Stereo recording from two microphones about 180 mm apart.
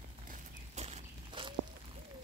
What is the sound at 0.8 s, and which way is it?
Clip-clop, 35° right (ahead or behind).